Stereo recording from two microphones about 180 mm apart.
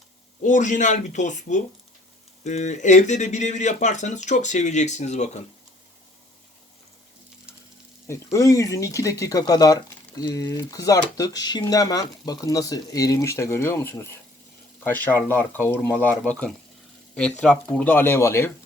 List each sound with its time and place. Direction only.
0.4 s speech: 45° left (ahead or behind)
7.5 s frying: 5° right (ahead or behind)
8.0 s speech: 15° left (ahead or behind)